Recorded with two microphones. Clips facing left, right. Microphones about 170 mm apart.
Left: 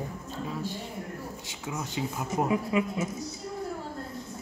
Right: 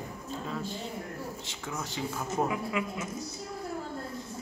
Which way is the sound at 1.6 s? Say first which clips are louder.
Left 3 dB; 15° left (ahead or behind).